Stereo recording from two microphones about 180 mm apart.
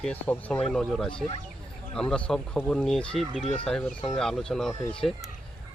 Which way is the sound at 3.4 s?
40° left (ahead or behind).